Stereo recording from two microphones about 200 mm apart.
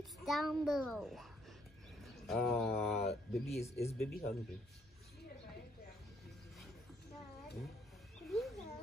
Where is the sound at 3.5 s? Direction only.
30° left (ahead or behind).